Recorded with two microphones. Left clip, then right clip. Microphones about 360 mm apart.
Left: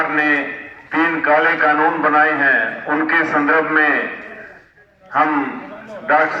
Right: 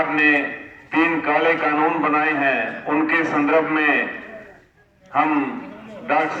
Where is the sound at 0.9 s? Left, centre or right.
Centre.